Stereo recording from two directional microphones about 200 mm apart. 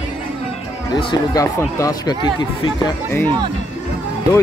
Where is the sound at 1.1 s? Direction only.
15° left (ahead or behind).